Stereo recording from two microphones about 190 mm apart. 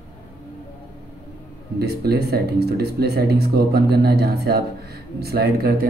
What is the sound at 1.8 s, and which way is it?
Speech, 55° right (ahead or behind).